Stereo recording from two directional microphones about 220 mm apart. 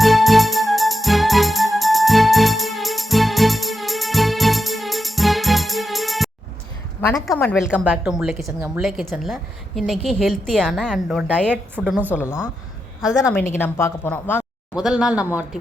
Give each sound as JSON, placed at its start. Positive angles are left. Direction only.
{"t": 0.0, "sound": "music", "side_deg": 0}
{"t": 7.1, "sound": "a woman's voice", "side_deg": 5}
{"t": 12.1, "sound": "a woman's voice", "side_deg": 10}
{"t": 13.5, "sound": "a woman's voice", "side_deg": 10}
{"t": 14.8, "sound": "a woman's voice", "side_deg": 0}